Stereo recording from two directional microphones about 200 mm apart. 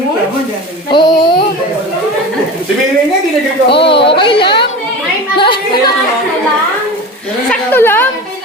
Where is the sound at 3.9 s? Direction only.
25° left (ahead or behind).